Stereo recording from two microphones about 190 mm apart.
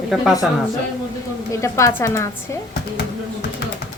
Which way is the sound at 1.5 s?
15° left (ahead or behind).